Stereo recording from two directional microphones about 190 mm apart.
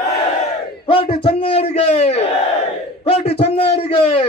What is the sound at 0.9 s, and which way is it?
A man's voice, 30° left (ahead or behind).